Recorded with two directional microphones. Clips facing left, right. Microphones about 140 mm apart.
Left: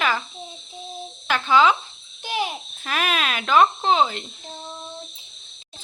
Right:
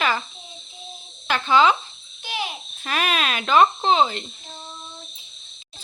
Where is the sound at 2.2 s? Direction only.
45° left (ahead or behind).